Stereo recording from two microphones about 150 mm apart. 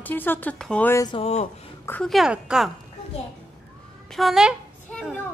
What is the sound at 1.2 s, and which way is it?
Speech, 50° left (ahead or behind).